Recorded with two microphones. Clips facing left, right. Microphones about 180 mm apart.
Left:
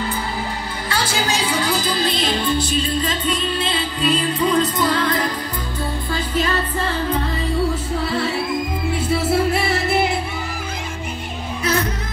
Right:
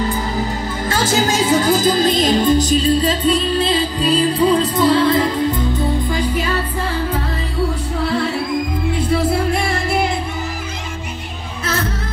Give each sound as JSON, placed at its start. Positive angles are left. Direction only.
{"t": 0.1, "sound": "speech", "side_deg": -45}
{"t": 6.1, "sound": "music", "side_deg": -10}
{"t": 9.2, "sound": "music", "side_deg": 5}
{"t": 11.6, "sound": "music", "side_deg": 15}